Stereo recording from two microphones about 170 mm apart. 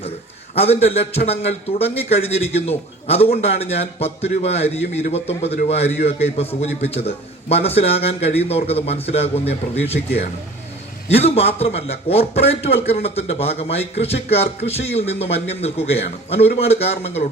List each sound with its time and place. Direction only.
0.5 s a man's voice: 35° left (ahead or behind)
11.1 s a man's voice: 35° left (ahead or behind)